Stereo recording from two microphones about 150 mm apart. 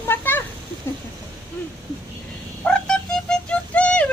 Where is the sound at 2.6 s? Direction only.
5° left (ahead or behind).